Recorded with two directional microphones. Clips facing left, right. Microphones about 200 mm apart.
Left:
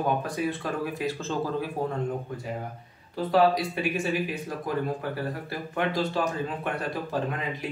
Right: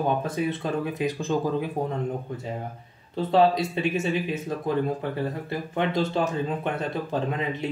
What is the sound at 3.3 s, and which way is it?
Speech, 25° right (ahead or behind).